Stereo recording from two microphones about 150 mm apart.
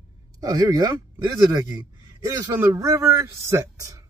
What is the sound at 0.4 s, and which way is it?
Speech, 25° right (ahead or behind).